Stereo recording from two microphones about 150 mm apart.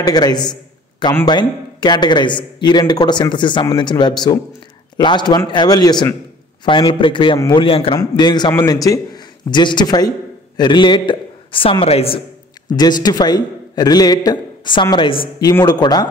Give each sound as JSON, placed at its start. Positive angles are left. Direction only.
{"t": 0.0, "sound": "a man's voice", "side_deg": 25}
{"t": 12.6, "sound": "speech", "side_deg": 30}